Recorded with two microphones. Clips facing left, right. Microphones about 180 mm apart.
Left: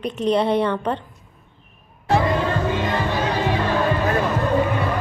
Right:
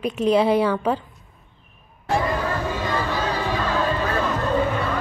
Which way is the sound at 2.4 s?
20° left (ahead or behind).